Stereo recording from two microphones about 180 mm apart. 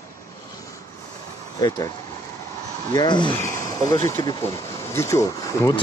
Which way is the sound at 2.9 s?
25° left (ahead or behind).